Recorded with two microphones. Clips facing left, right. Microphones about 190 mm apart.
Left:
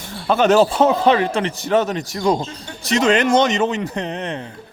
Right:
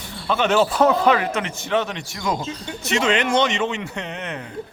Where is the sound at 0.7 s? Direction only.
25° left (ahead or behind).